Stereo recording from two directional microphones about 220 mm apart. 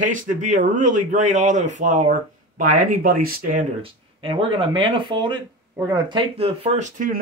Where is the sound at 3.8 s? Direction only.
25° right (ahead or behind).